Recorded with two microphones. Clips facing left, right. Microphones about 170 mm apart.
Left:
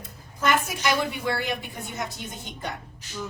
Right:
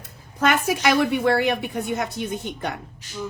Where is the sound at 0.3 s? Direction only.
65° right (ahead or behind).